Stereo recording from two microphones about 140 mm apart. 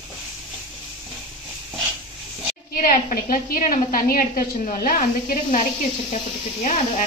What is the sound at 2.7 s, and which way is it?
A woman's voice, 85° left.